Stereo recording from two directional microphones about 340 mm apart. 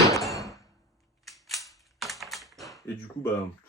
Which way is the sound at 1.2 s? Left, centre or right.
Centre.